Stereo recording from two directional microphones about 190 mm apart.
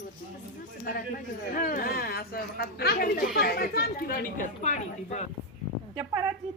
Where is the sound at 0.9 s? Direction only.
50° left (ahead or behind).